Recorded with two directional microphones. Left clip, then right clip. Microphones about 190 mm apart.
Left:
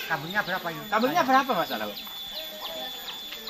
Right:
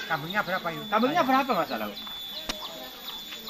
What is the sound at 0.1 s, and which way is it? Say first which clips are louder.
Speech: even; 25° right (ahead or behind).